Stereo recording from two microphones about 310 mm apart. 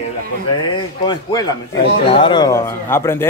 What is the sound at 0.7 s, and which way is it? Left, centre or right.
A man's voice, centre.